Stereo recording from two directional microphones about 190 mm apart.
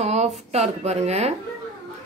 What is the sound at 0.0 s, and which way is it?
Speech, 35° right (ahead or behind).